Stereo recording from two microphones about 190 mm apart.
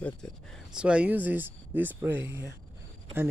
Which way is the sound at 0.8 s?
5° right (ahead or behind).